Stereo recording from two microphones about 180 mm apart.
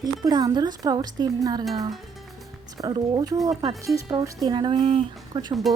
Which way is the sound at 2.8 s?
25° right (ahead or behind).